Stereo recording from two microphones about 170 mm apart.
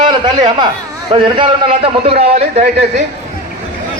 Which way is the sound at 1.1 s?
30° right (ahead or behind).